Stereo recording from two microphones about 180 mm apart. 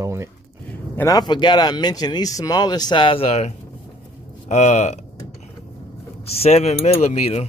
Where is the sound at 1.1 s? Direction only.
25° left (ahead or behind); by 5.0 s 40° left (ahead or behind).